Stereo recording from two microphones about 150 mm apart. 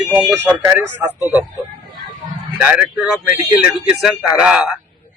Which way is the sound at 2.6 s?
15° right (ahead or behind).